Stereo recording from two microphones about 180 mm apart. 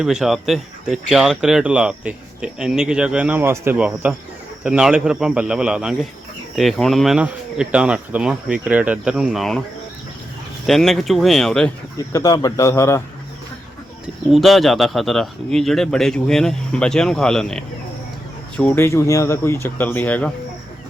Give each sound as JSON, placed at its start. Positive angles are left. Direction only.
{"t": 0.0, "sound": "speech", "side_deg": 0}
{"t": 10.7, "sound": "speech", "side_deg": 0}
{"t": 12.1, "sound": "speech", "side_deg": 20}
{"t": 14.3, "sound": "speech", "side_deg": 0}